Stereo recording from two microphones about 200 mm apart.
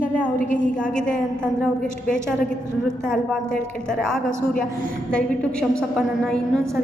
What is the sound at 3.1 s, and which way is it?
Speech, 5° left (ahead or behind).